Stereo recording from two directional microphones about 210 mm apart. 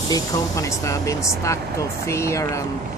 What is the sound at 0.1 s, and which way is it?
Speech, 15° left (ahead or behind).